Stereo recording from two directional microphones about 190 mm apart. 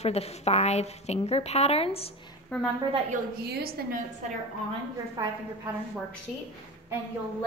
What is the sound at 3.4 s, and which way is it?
Speech, 55° right (ahead or behind).